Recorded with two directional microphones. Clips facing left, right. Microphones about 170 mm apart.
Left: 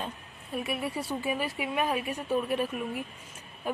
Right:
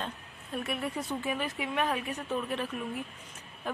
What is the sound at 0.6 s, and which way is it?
A woman's voice, 5° left (ahead or behind).